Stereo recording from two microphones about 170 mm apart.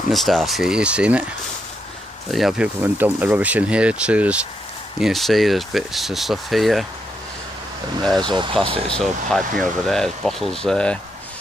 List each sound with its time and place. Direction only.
0.1 s speech: centre (ahead or behind)
2.3 s speech: 5° right (ahead or behind)
8.2 s speech: 30° right (ahead or behind)
8.8 s speech: 5° left (ahead or behind)